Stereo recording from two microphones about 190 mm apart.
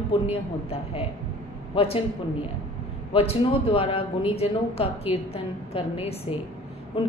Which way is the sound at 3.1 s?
30° left (ahead or behind).